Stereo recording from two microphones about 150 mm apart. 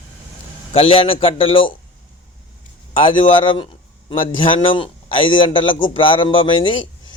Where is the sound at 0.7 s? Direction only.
40° left (ahead or behind).